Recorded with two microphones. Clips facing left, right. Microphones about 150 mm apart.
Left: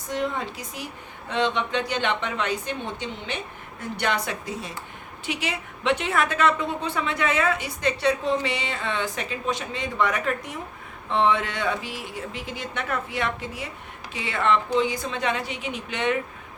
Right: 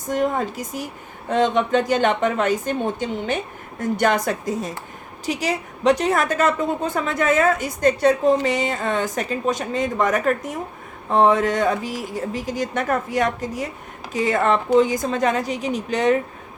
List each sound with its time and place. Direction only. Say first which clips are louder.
0.1 s a woman's voice: right 6 dB; 45° right (ahead or behind)